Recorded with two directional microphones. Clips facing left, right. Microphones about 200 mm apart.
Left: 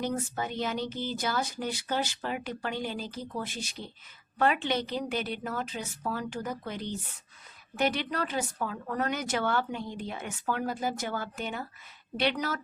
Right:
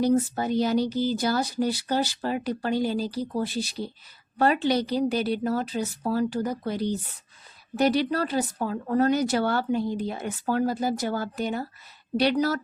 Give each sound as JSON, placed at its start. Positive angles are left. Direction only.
{"t": 0.0, "sound": "speech", "side_deg": -35}